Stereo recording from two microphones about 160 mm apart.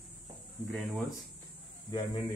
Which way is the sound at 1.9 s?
30° left (ahead or behind).